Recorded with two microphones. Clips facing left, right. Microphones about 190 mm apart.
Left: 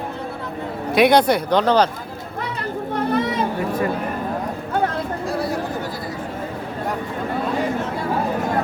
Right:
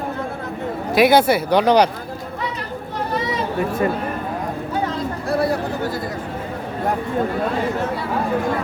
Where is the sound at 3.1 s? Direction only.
55° left (ahead or behind).